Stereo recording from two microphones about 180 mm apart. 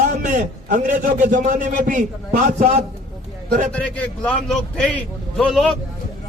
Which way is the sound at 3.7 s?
5° left (ahead or behind).